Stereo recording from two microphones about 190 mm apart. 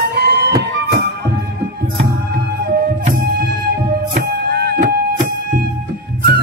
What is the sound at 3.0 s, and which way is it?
Music, 50° right (ahead or behind).